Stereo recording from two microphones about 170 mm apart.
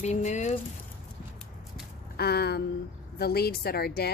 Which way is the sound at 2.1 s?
70° left (ahead or behind).